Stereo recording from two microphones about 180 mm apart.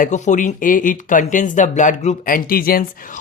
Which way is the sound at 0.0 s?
45° left (ahead or behind).